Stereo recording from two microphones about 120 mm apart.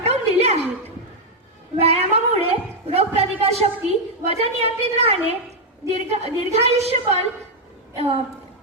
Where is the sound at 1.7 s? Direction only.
60° right (ahead or behind).